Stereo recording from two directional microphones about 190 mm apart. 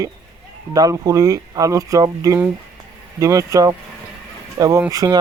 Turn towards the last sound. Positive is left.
turn(degrees=-20)  # may be behind; listen again after turning